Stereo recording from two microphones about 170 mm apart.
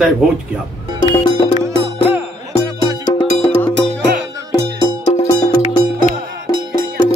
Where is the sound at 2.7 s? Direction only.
25° right (ahead or behind).